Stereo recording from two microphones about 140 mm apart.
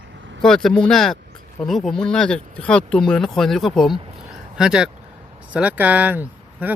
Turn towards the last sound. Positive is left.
turn(degrees=-10)  # may be behind; listen again after turning